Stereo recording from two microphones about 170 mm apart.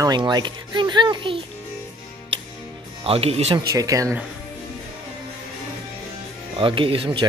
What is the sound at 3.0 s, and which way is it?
Speech, 35° right (ahead or behind).